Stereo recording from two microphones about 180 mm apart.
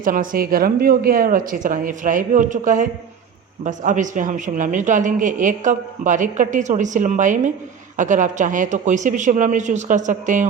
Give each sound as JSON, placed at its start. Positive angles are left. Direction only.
{"t": 0.0, "sound": "speech", "side_deg": -50}